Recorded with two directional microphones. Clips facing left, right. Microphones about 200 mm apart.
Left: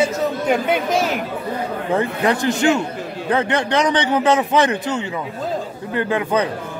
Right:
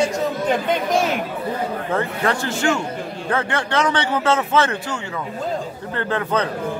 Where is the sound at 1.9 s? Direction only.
15° left (ahead or behind).